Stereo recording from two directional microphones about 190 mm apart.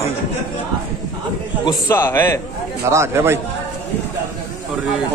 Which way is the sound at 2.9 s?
15° right (ahead or behind).